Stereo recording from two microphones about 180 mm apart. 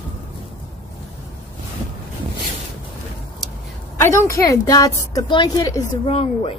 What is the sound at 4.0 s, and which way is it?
A woman's voice, 15° left (ahead or behind).